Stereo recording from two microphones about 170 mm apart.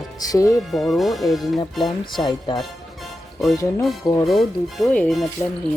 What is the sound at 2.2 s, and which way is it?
Speech, 25° left (ahead or behind).